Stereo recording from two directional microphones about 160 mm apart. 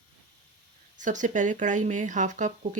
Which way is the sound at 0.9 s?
50° right (ahead or behind).